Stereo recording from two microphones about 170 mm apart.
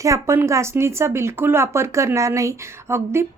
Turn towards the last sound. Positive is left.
turn(degrees=-15)  # may be behind; listen again after turning